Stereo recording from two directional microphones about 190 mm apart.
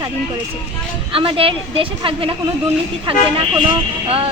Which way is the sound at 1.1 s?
30° right (ahead or behind).